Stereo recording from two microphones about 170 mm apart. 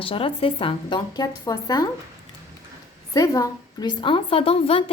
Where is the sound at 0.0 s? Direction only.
30° left (ahead or behind).